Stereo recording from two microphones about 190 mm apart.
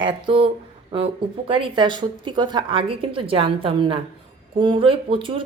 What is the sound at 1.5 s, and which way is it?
Speech, 25° right (ahead or behind).